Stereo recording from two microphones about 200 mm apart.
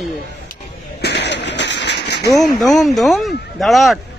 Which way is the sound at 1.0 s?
60° left (ahead or behind).